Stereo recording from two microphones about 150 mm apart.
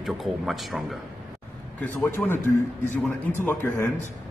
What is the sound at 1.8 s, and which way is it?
Speech, 15° left (ahead or behind).